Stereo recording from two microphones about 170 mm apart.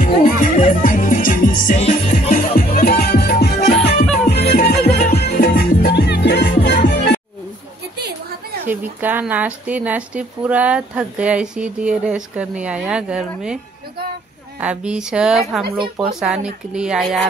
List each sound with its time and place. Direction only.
0.0 s music: 50° left (ahead or behind)
1.8 s music: 40° left (ahead or behind); by 7.2 s 75° left (ahead or behind)
8.6 s speech: 10° right (ahead or behind)
14.6 s speech: 5° right (ahead or behind)